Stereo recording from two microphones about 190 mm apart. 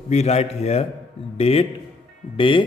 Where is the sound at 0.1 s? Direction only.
35° left (ahead or behind).